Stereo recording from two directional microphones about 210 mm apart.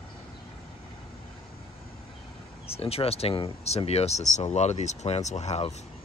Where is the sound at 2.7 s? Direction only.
30° left (ahead or behind).